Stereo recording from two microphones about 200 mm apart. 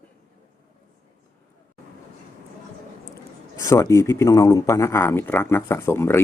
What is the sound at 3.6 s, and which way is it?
Speech, 15° left (ahead or behind).